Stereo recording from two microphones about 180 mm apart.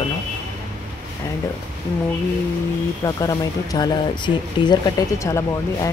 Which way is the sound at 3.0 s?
20° left (ahead or behind).